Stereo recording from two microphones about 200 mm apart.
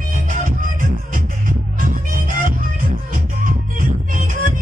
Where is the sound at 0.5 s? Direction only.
45° right (ahead or behind).